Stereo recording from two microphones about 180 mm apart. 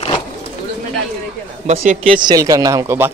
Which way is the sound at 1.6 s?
40° right (ahead or behind).